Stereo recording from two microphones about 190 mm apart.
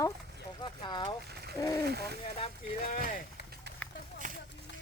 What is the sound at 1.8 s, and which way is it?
Speech, 55° right (ahead or behind).